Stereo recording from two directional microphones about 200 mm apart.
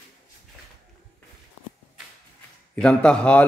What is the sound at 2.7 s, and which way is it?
Speech, 5° left (ahead or behind).